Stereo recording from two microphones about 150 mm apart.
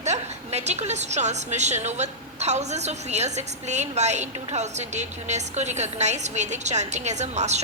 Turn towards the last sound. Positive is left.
turn(degrees=-50)  # may be behind; listen again after turning